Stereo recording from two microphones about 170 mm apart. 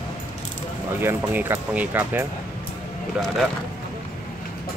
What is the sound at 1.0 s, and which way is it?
Speech, 10° right (ahead or behind).